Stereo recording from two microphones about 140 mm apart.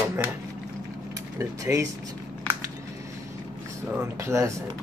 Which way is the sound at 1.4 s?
25° right (ahead or behind).